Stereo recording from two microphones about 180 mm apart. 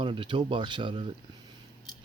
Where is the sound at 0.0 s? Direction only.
30° right (ahead or behind).